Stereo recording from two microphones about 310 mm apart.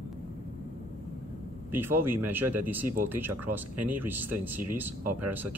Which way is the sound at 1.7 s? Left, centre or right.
Centre.